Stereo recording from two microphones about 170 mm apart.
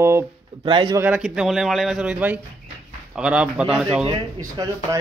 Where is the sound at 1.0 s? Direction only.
5° right (ahead or behind).